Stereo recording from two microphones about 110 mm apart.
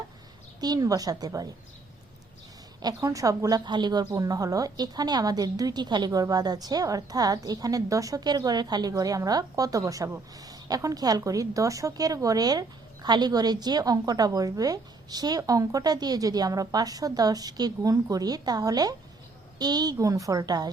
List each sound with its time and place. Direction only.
0.6 s a woman's voice: 35° right (ahead or behind)
2.8 s a woman's voice: 30° right (ahead or behind)